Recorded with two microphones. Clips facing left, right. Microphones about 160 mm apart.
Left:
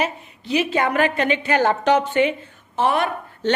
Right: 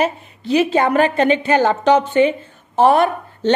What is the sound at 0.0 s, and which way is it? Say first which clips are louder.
A woman's voice: right 5 dB; 35° right (ahead or behind).